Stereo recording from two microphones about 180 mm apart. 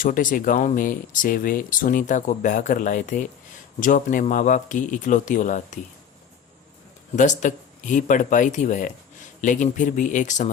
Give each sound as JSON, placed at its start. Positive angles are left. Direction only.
{"t": 0.0, "sound": "speech", "side_deg": 45}
{"t": 7.2, "sound": "speech", "side_deg": 45}